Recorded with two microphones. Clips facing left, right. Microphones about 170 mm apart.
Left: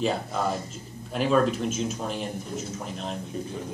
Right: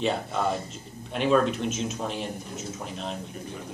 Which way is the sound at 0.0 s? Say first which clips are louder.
Even; centre (ahead or behind).